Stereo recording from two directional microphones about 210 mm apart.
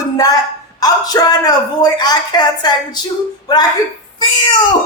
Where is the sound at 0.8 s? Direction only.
20° left (ahead or behind).